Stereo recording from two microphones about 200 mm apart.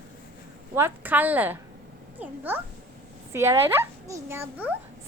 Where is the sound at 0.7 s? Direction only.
10° right (ahead or behind).